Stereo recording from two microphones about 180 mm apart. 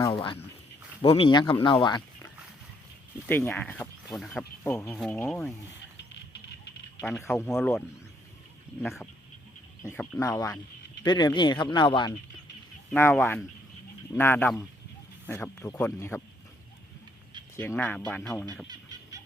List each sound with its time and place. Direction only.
0.0 s speech: 25° left (ahead or behind)
3.2 s speech: 10° left (ahead or behind)
7.0 s speech: 5° left (ahead or behind)
8.8 s speech: centre (ahead or behind); by 12.1 s 25° left (ahead or behind)
12.9 s speech: 10° left (ahead or behind)
17.6 s speech: 10° left (ahead or behind)
18.7 s fowl: 20° right (ahead or behind)